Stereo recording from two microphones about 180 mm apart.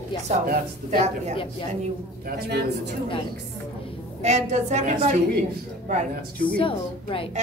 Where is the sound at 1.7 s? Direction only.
40° right (ahead or behind).